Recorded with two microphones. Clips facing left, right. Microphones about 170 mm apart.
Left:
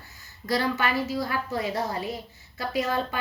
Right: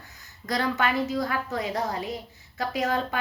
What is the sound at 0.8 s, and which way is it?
Speech, 20° right (ahead or behind).